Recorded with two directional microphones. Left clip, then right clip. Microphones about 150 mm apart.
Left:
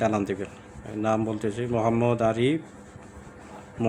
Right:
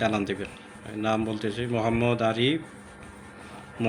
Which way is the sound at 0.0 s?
25° left (ahead or behind).